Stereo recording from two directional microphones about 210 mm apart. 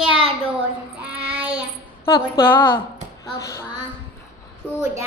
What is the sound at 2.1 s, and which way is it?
A woman's voice, 20° left (ahead or behind).